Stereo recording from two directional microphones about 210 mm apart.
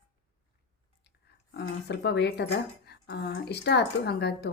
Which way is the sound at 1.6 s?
55° left (ahead or behind).